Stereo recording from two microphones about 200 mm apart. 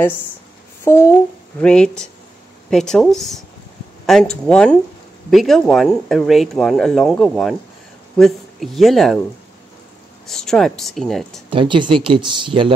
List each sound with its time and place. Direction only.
0.8 s speech: 15° left (ahead or behind)
10.2 s speech: centre (ahead or behind)
11.5 s speech: 25° right (ahead or behind)